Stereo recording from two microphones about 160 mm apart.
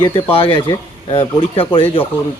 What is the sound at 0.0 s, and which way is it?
Speech, 35° left (ahead or behind).